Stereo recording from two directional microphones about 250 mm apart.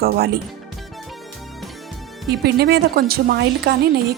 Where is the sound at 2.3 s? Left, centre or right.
Right.